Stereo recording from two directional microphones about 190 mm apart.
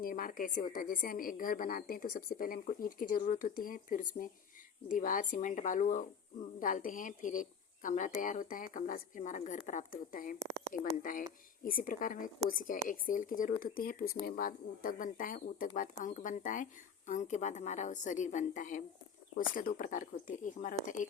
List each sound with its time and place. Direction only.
0.0 s a woman's voice: 50° left (ahead or behind)